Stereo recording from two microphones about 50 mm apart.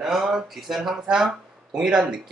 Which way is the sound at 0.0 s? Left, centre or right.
Centre.